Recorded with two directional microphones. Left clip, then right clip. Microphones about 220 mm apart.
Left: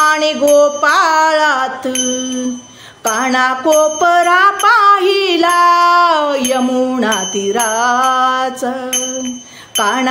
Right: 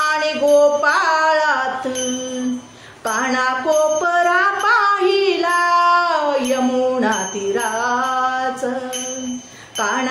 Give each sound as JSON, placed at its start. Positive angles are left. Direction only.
{"t": 0.0, "sound": "music", "side_deg": 40}
{"t": 3.1, "sound": "music", "side_deg": 40}